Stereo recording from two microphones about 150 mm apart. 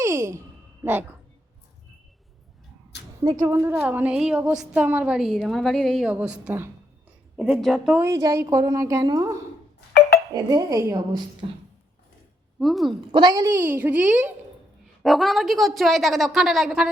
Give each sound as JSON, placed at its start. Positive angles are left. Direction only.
{"t": 0.0, "sound": "a sound", "side_deg": -15}
{"t": 3.3, "sound": "a woman's voice", "side_deg": -15}
{"t": 7.5, "sound": "a woman's voice", "side_deg": 0}
{"t": 7.9, "sound": "a woman's voice", "side_deg": -20}
{"t": 10.3, "sound": "a woman's voice", "side_deg": -25}
{"t": 11.4, "sound": "beatboxing", "side_deg": -35}
{"t": 12.5, "sound": "speech", "side_deg": 0}
{"t": 13.1, "sound": "a woman's voice", "side_deg": -30}
{"t": 15.0, "sound": "a woman's voice", "side_deg": 0}